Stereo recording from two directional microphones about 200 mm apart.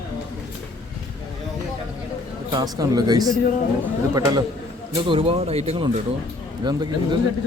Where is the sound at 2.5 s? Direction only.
20° right (ahead or behind).